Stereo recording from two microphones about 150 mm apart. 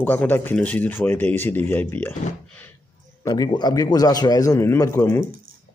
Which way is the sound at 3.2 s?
25° left (ahead or behind).